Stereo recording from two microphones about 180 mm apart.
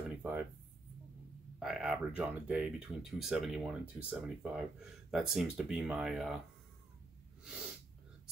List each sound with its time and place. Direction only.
0.1 s a sound: 10° right (ahead or behind)
1.6 s speech: centre (ahead or behind)
7.4 s sneeze: 5° right (ahead or behind)